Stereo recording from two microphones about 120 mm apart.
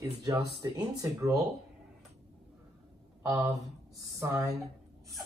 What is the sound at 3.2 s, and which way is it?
Speech, 25° right (ahead or behind).